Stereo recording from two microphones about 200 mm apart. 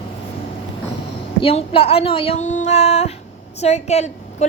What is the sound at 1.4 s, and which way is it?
A woman's voice, 30° left (ahead or behind).